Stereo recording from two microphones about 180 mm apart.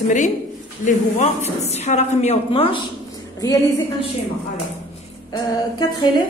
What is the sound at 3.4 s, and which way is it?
Speech, 20° left (ahead or behind).